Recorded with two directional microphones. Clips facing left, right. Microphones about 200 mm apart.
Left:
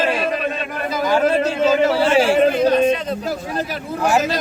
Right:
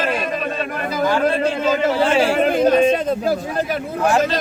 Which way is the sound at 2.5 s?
50° right (ahead or behind).